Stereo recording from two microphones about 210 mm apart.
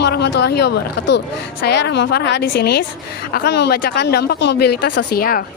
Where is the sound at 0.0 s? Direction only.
55° left (ahead or behind).